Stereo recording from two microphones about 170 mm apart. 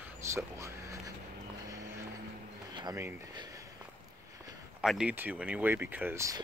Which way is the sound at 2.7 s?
25° right (ahead or behind).